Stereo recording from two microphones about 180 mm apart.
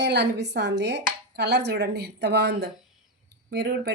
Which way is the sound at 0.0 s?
70° right (ahead or behind).